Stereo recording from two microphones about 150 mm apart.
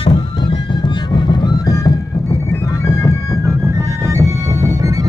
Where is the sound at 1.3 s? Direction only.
30° left (ahead or behind).